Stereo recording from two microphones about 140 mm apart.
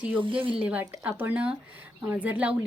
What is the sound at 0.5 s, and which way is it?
Speech, 10° right (ahead or behind).